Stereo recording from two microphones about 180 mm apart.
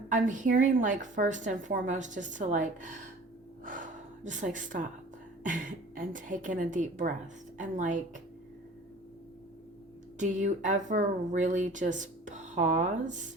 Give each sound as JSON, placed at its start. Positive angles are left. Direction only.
{"t": 0.1, "sound": "speech", "side_deg": -45}
{"t": 3.6, "sound": "gasp", "side_deg": -45}
{"t": 5.5, "sound": "speech", "side_deg": -50}
{"t": 10.2, "sound": "speech", "side_deg": -45}